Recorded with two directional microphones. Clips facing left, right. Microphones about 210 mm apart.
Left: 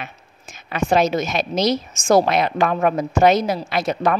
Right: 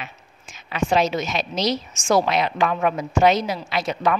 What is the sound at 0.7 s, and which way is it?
A woman's voice, 45° left (ahead or behind).